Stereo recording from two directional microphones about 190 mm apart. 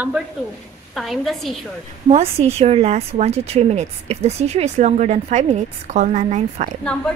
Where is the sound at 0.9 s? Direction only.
Centre (ahead or behind).